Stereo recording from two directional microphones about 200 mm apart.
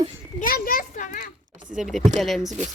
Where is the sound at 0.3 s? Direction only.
45° left (ahead or behind).